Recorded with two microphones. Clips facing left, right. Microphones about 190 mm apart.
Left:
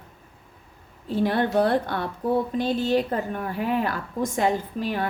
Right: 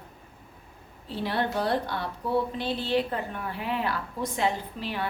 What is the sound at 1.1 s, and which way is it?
A woman's voice, 50° left (ahead or behind).